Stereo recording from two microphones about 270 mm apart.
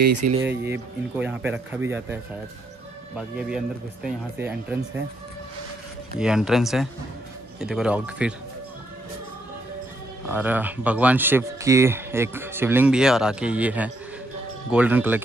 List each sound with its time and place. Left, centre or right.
0.2 s speech: right
0.7 s speech: centre
3.2 s speech: centre
6.1 s speech: centre
10.2 s speech: centre